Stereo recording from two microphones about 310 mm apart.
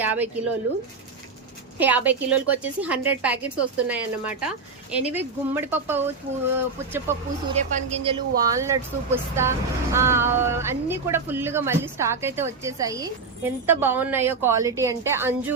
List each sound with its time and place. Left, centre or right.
0.0 s a sound: centre
1.8 s a woman's voice: centre
7.5 s speech: right